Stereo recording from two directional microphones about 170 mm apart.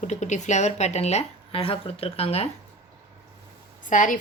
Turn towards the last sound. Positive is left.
turn(degrees=50)  # may be behind; listen again after turning